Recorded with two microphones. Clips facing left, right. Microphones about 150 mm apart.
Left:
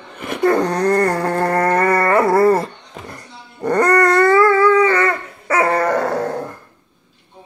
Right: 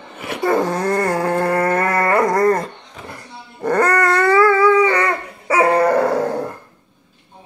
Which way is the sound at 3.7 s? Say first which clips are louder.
Left 2 dB; centre (ahead or behind).